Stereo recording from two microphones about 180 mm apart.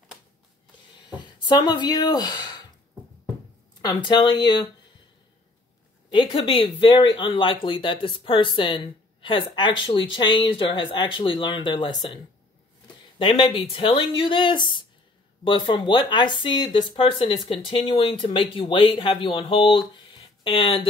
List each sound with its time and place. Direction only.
1.4 s speech: 25° left (ahead or behind)
3.8 s speech: 25° left (ahead or behind)
6.0 s speech: 25° left (ahead or behind)
13.2 s speech: 25° left (ahead or behind)